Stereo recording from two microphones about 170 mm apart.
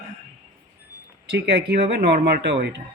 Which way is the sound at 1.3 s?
80° right.